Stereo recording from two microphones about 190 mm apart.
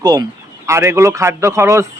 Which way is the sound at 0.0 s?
20° right (ahead or behind).